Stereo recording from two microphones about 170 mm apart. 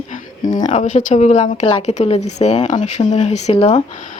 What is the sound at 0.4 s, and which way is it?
Speech, 45° left (ahead or behind).